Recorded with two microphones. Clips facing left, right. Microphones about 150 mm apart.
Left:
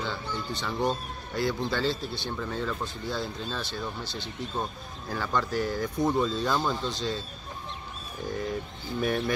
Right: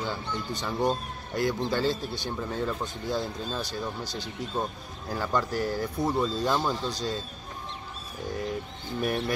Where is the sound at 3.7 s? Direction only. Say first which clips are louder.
Right 1 dB; 40° right (ahead or behind).